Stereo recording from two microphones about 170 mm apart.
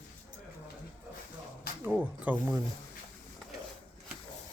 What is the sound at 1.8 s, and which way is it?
Speech, 5° right (ahead or behind).